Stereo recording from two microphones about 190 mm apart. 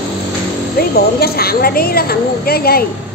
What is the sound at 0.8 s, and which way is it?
A woman's voice, 55° left (ahead or behind).